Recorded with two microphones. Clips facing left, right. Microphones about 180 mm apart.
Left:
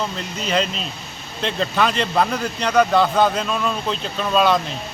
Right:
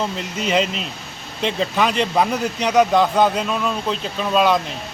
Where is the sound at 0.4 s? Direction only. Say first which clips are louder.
Right 2 dB; 15° right (ahead or behind).